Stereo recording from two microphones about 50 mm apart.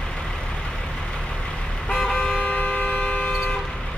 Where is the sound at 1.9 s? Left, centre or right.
Centre.